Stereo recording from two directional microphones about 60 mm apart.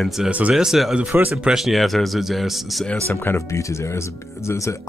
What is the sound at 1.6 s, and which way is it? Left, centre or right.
A man's voice, centre.